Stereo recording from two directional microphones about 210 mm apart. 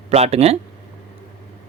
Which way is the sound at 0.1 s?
30° right (ahead or behind).